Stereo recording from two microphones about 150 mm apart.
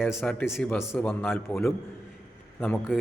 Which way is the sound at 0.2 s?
10° left (ahead or behind).